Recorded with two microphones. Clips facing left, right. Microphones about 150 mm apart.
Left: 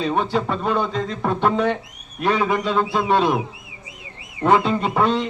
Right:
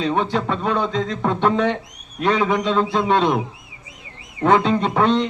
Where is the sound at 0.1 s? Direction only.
10° left (ahead or behind).